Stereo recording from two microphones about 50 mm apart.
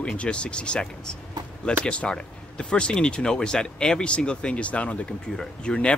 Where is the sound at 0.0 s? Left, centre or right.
Left.